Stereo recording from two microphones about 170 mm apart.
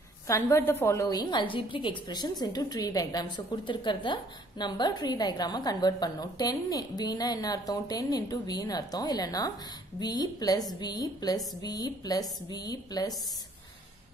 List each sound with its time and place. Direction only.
0.3 s a woman's voice: 15° left (ahead or behind)